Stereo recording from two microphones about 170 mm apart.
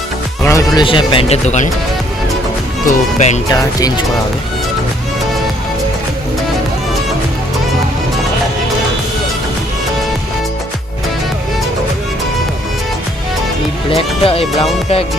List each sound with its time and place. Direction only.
0.4 s speech: 20° left (ahead or behind); by 1.7 s 45° left (ahead or behind)
2.8 s speech: 45° left (ahead or behind)
3.5 s speech: 20° left (ahead or behind)
13.9 s speech: 35° left (ahead or behind)